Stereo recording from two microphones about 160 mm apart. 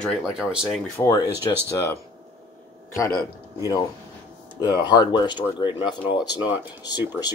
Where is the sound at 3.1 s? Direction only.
20° left (ahead or behind).